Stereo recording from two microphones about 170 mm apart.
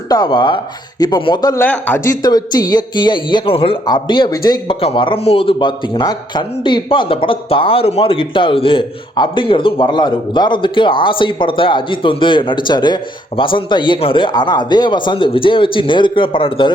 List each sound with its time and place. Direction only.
0.1 s speech: 25° left (ahead or behind)
1.6 s speech: 10° left (ahead or behind)
2.2 s speech: 25° left (ahead or behind)